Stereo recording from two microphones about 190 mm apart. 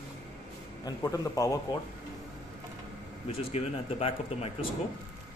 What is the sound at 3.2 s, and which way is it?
Speech, 30° left (ahead or behind).